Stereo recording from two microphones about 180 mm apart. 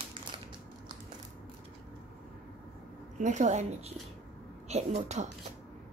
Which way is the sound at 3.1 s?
40° right (ahead or behind).